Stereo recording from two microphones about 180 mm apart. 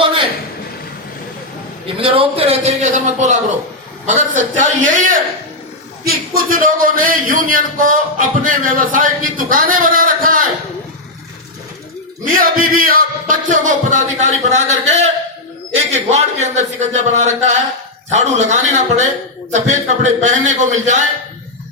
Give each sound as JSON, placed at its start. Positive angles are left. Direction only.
{"t": 2.0, "sound": "a man's voice", "side_deg": -30}
{"t": 12.2, "sound": "a man's voice", "side_deg": -50}